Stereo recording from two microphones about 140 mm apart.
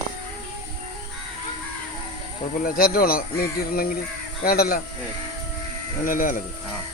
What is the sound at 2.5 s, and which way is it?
Speech, 90° left.